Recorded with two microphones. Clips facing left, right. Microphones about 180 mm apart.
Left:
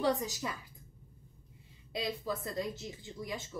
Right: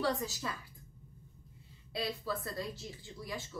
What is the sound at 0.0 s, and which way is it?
Speech, 15° left (ahead or behind).